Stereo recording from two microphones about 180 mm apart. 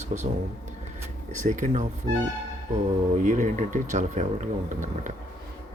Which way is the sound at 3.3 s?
45° right (ahead or behind).